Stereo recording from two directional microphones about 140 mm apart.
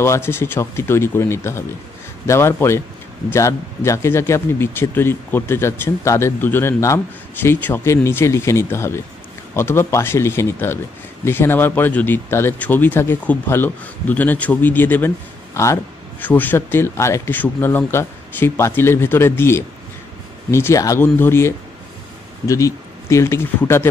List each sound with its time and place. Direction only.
0.0 s speech: 20° left (ahead or behind)